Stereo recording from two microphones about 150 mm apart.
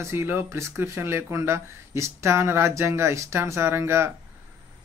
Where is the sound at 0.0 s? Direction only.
15° right (ahead or behind).